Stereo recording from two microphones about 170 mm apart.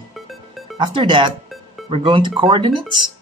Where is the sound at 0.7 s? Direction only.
30° right (ahead or behind).